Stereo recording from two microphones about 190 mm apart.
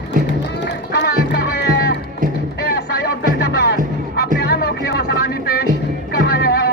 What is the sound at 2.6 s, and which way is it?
Music, 60° left (ahead or behind).